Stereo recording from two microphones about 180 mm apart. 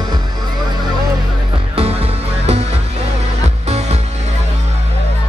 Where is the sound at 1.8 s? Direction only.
35° right (ahead or behind).